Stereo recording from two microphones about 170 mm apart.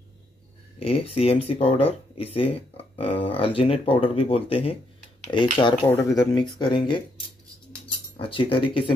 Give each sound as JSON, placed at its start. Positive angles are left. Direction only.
{"t": 0.7, "sound": "speech", "side_deg": 35}
{"t": 5.9, "sound": "speech", "side_deg": 15}
{"t": 6.3, "sound": "speech", "side_deg": 25}
{"t": 8.2, "sound": "speech", "side_deg": 30}